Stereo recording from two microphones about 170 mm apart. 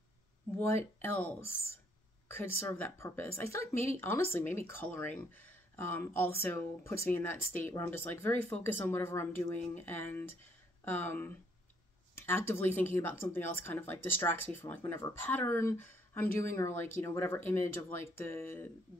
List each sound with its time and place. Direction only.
0.6 s speech: 15° left (ahead or behind)
2.6 s speech: 15° left (ahead or behind)